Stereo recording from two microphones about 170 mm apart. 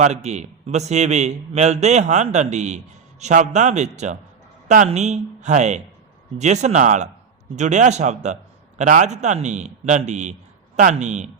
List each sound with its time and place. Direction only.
0.0 s a man's voice: 40° right (ahead or behind)